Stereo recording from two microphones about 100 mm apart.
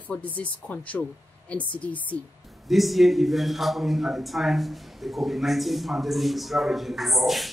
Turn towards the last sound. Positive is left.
turn(degrees=0)  # may be behind; listen again after turning